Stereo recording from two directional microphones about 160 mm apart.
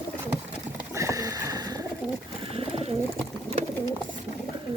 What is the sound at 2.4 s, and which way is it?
Pigeon, 35° right (ahead or behind).